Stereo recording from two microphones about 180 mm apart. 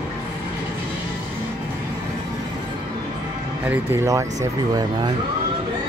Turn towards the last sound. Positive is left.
turn(degrees=-25)  # may be behind; listen again after turning